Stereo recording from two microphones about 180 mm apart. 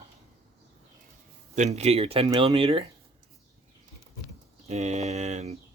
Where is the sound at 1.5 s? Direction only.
40° right (ahead or behind).